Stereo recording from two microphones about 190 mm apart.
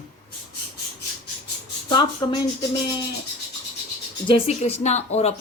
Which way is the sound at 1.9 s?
25° left (ahead or behind).